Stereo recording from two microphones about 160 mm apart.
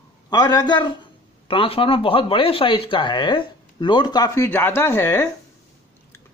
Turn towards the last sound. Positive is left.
turn(degrees=15)  # may be behind; listen again after turning